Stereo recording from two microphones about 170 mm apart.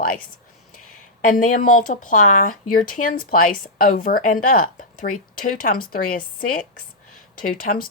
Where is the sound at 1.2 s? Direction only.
50° left (ahead or behind).